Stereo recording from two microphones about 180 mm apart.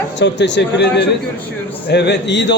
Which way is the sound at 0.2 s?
80° left.